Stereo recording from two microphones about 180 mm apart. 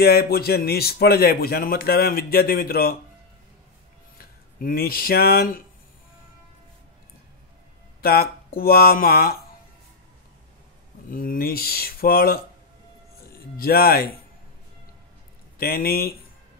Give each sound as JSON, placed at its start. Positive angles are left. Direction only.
{"t": 0.0, "sound": "a man's voice", "side_deg": 60}
{"t": 4.2, "sound": "speech", "side_deg": 55}
{"t": 8.0, "sound": "a man's voice", "side_deg": 55}
{"t": 11.1, "sound": "a man's voice", "side_deg": 50}
{"t": 13.6, "sound": "a man's voice", "side_deg": 55}
{"t": 15.5, "sound": "a man's voice", "side_deg": 55}